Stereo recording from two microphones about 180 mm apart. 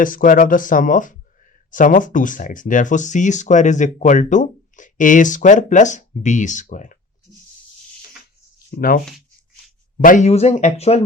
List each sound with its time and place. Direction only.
0.0 s speech: 50° left (ahead or behind)
8.7 s speech: 55° left (ahead or behind)
10.0 s speech: 45° left (ahead or behind)